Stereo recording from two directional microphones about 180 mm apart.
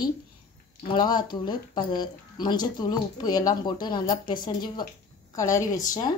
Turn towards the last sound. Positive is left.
turn(degrees=15)  # may be behind; listen again after turning